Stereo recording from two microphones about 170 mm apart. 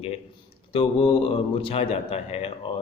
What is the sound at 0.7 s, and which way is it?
Speech, 35° left (ahead or behind).